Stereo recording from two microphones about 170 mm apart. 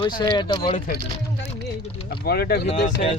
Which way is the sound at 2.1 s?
70° left (ahead or behind).